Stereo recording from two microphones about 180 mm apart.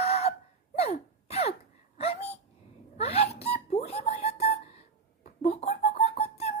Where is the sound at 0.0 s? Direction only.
35° left (ahead or behind).